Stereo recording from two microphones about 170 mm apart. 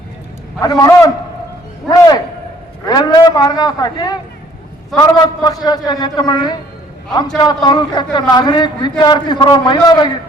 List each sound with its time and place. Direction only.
0.6 s a man's voice: 20° left (ahead or behind)
1.9 s a sound: 25° left (ahead or behind)
2.8 s a man's voice: 25° left (ahead or behind)